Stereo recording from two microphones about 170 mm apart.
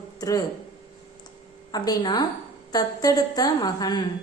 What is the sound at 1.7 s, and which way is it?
A woman's voice, 25° left (ahead or behind).